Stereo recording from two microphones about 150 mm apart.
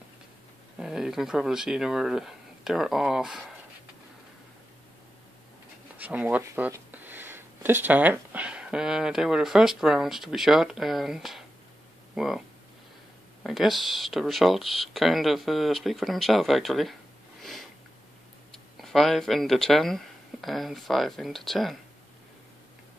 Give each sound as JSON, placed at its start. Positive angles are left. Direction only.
{"t": 0.7, "sound": "speech", "side_deg": -5}
{"t": 5.9, "sound": "speech", "side_deg": -10}
{"t": 17.4, "sound": "sniff", "side_deg": 0}
{"t": 18.5, "sound": "speech", "side_deg": 0}